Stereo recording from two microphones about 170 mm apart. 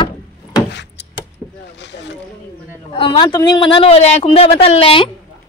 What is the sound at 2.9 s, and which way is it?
A man's voice, 30° left (ahead or behind).